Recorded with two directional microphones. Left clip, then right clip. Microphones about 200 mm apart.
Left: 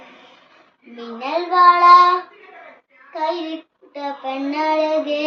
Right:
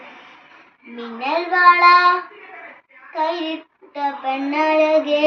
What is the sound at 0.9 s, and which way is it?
A child's voice, 20° left (ahead or behind).